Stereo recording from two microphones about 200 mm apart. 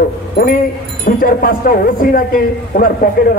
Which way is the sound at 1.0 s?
45° left (ahead or behind).